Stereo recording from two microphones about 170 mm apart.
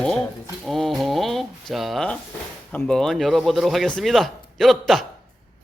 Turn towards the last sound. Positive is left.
turn(degrees=0)  # may be behind; listen again after turning